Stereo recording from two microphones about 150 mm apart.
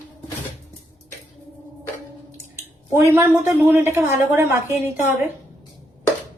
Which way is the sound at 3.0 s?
20° right (ahead or behind).